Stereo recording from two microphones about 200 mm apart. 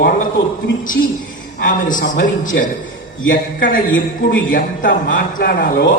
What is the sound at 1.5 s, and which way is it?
A man's voice, 40° left (ahead or behind).